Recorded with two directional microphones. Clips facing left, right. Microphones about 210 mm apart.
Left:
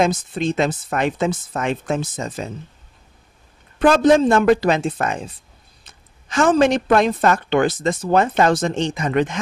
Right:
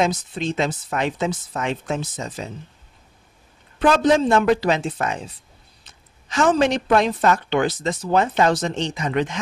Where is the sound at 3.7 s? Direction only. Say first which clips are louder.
Left 3 dB; 50° left (ahead or behind).